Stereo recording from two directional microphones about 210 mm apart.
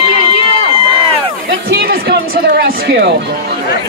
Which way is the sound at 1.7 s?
50° right (ahead or behind).